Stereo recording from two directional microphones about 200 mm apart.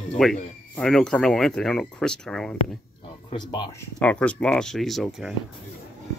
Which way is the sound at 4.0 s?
5° left (ahead or behind).